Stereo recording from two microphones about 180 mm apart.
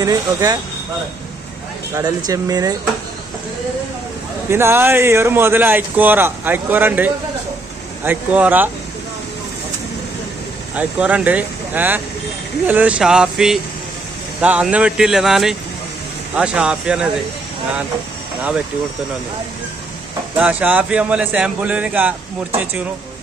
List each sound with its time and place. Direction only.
0.0 s speech: 20° right (ahead or behind)
2.0 s speech: 20° right (ahead or behind)
4.5 s speech: 15° right (ahead or behind)
10.7 s speech: 10° right (ahead or behind)
20.3 s speech: 10° right (ahead or behind)